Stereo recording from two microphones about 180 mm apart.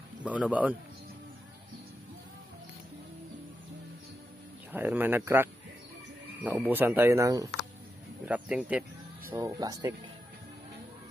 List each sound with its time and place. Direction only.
0.2 s speech: 5° right (ahead or behind)
4.7 s speech: 10° right (ahead or behind)
8.3 s speech: 5° right (ahead or behind)
9.3 s speech: 20° right (ahead or behind)